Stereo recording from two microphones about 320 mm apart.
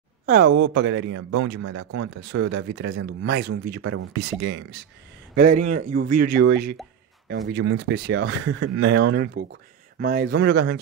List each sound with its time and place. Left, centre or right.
0.3 s speech: right
1.3 s speech: right
3.1 s speech: right
5.3 s speech: right